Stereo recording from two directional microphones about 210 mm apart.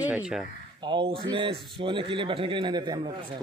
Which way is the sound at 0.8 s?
20° right (ahead or behind).